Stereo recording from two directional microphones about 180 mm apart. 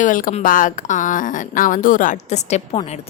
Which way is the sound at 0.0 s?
50° left (ahead or behind).